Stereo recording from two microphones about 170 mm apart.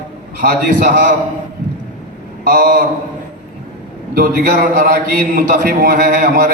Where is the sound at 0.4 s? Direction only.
50° right (ahead or behind).